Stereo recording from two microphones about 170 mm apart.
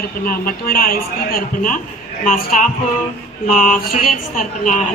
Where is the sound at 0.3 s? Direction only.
55° left (ahead or behind).